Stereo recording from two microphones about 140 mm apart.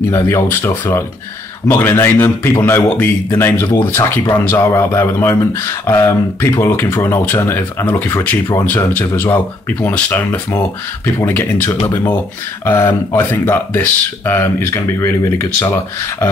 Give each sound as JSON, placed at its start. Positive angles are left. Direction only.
{"t": 0.1, "sound": "speech", "side_deg": 20}